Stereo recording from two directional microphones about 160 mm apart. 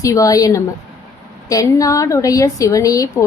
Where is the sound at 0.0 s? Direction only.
20° left (ahead or behind).